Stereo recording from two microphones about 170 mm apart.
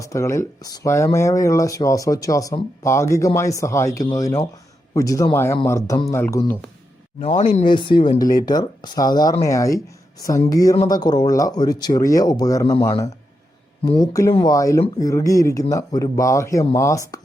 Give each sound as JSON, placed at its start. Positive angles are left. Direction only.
{"t": 0.0, "sound": "speech", "side_deg": 15}
{"t": 7.2, "sound": "speech", "side_deg": 40}
{"t": 7.6, "sound": "speech", "side_deg": 30}